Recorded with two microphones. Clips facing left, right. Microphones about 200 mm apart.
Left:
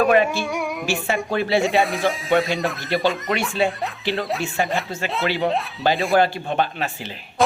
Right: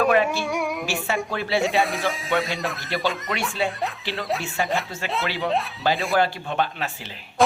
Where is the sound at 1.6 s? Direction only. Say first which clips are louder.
Left 3 dB; centre (ahead or behind).